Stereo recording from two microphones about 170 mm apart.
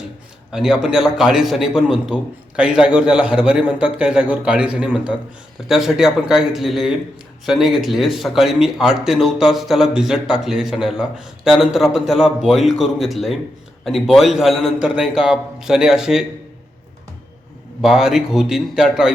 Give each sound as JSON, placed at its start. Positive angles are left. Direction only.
{"t": 0.5, "sound": "speech", "side_deg": -5}
{"t": 17.8, "sound": "speech", "side_deg": 0}